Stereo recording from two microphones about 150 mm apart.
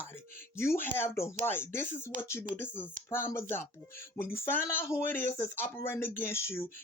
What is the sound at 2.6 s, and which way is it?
Speech, 15° left (ahead or behind).